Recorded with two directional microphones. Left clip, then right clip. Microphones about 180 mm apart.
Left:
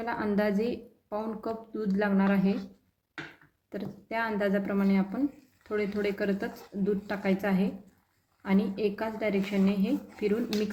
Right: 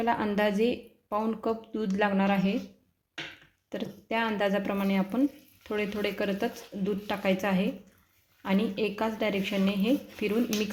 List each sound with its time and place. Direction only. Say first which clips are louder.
0.0 s a woman's voice: right 3 dB; 35° right (ahead or behind)
3.7 s a woman's voice: right 3 dB; 30° right (ahead or behind)